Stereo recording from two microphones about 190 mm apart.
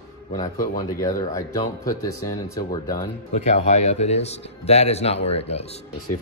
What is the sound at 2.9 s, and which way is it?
Speech, 35° left (ahead or behind).